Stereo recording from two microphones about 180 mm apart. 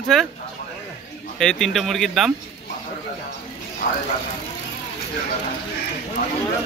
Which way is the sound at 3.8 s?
55° left (ahead or behind).